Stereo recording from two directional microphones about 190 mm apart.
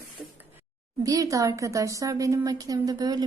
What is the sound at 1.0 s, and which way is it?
A woman's voice, 20° right (ahead or behind).